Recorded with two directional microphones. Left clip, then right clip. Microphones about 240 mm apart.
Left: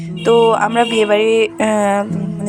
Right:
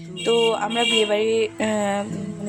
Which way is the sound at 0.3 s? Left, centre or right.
Left.